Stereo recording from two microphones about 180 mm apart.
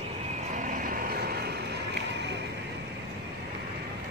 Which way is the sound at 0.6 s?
50° right (ahead or behind).